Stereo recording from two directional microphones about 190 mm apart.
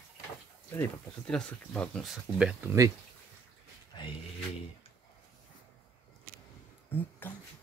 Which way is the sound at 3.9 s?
25° left (ahead or behind).